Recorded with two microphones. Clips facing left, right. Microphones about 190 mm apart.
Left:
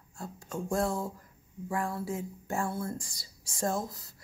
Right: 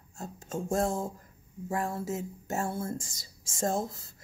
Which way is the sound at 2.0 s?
40° right (ahead or behind).